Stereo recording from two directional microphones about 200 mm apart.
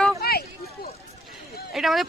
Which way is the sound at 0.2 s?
50° left (ahead or behind).